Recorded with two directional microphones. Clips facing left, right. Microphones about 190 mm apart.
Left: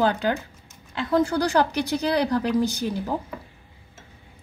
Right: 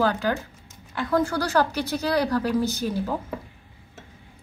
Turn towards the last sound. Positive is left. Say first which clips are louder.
# even
turn(degrees=15)  # may be behind; listen again after turning